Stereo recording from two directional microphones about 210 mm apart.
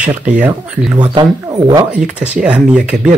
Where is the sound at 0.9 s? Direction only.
20° right (ahead or behind).